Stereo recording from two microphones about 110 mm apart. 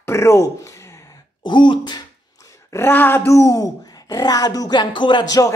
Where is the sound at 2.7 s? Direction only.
25° left (ahead or behind).